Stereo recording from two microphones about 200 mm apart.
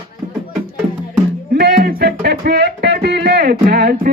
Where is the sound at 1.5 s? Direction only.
50° right (ahead or behind).